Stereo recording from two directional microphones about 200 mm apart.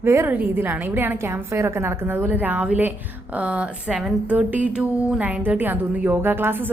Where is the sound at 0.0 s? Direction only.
10° right (ahead or behind).